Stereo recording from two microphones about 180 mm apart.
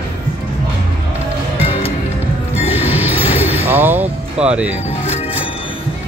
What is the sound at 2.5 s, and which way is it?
Music, 10° right (ahead or behind).